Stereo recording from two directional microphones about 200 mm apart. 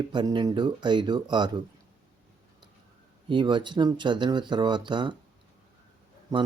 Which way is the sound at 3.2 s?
25° right (ahead or behind).